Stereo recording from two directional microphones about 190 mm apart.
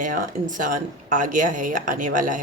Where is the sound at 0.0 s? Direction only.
40° right (ahead or behind).